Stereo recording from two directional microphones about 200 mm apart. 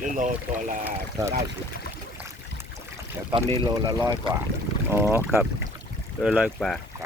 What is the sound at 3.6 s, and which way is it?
Speech, 20° right (ahead or behind).